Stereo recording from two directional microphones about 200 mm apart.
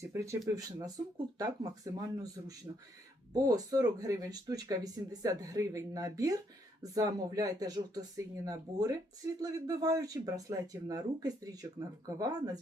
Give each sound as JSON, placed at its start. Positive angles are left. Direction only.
{"t": 0.0, "sound": "speech", "side_deg": -15}